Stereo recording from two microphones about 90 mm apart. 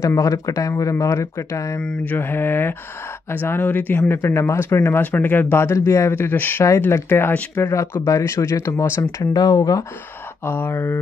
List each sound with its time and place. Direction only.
0.0 s speech: 35° left (ahead or behind)
1.8 s mantra: 10° left (ahead or behind)
2.1 s speech: 25° left (ahead or behind)
6.6 s speech: 30° left (ahead or behind)
9.3 s speech: 45° left (ahead or behind)
10.4 s speech: 25° left (ahead or behind)